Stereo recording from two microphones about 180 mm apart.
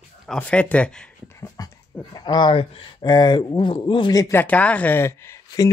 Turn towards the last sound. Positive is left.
turn(degrees=15)  # may be behind; listen again after turning